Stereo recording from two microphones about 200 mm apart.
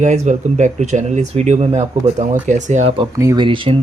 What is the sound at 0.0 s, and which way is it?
Speech, 35° right (ahead or behind).